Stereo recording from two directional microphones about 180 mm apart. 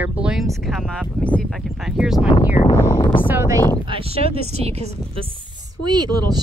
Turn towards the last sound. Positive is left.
turn(degrees=-20)  # may be behind; listen again after turning